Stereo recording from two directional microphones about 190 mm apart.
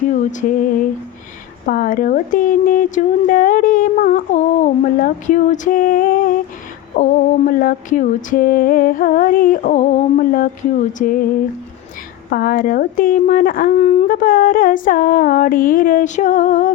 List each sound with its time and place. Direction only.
0.1 s speech: 40° left (ahead or behind)
12.3 s speech: 50° left (ahead or behind)